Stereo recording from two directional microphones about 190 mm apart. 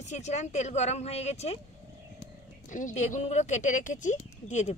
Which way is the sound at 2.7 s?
40° left (ahead or behind).